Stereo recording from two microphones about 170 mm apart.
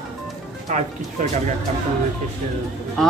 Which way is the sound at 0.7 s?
50° right (ahead or behind).